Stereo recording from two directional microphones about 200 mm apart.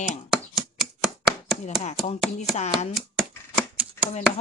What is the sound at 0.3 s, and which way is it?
Chopping, centre (ahead or behind).